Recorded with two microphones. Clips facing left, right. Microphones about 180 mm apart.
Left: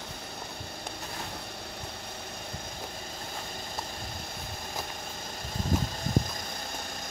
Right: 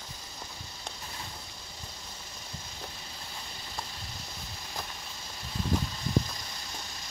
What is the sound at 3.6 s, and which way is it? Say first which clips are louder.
Vehicle: left 4 dB; 50° left (ahead or behind).